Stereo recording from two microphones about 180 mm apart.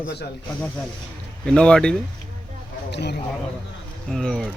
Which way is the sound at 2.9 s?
65° left (ahead or behind).